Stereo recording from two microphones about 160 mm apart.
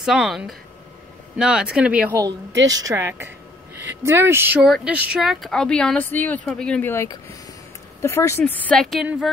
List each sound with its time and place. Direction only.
0.0 s speech: 5° right (ahead or behind)
2.6 s a woman's voice: 20° right (ahead or behind); by 9.3 s centre (ahead or behind)